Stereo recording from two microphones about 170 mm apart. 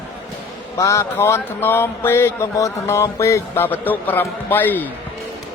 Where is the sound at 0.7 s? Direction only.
15° left (ahead or behind).